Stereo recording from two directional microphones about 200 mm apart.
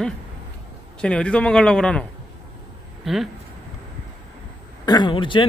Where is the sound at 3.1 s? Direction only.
Centre (ahead or behind).